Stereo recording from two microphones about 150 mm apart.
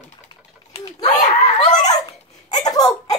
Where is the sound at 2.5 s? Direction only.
25° left (ahead or behind).